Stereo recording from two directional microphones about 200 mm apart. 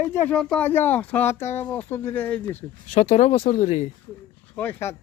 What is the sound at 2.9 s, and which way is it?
Speech, 30° left (ahead or behind).